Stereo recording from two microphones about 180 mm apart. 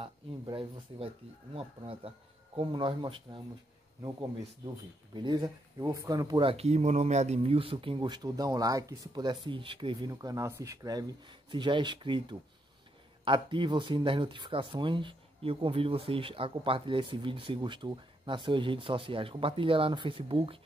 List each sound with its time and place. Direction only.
0.5 s speech: 30° right (ahead or behind)
5.1 s speech: 25° right (ahead or behind)